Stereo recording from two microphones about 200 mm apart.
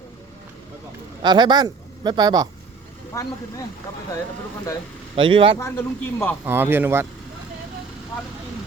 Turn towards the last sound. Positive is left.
turn(degrees=-10)  # may be behind; listen again after turning